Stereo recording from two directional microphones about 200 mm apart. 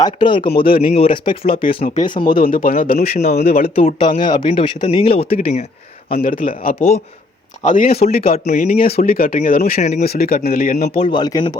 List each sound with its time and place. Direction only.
0.0 s speech: 25° left (ahead or behind)
2.3 s speech: 45° left (ahead or behind)
3.9 s speech: 25° left (ahead or behind)
6.1 s speech: 45° left (ahead or behind)
7.9 s speech: 30° left (ahead or behind)
8.3 s speech: 40° left (ahead or behind)
10.9 s speech: 25° left (ahead or behind)